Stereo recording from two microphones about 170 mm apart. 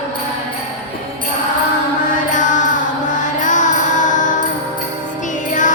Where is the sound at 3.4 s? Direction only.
50° left (ahead or behind).